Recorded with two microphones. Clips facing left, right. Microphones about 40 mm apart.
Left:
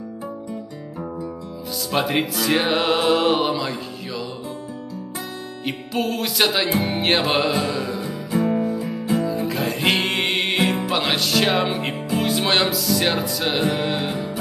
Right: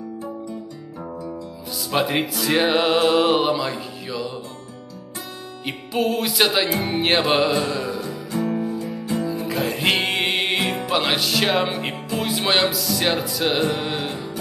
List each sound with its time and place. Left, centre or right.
1.9 s music: centre
5.7 s music: centre
8.0 s music: centre
9.2 s music: centre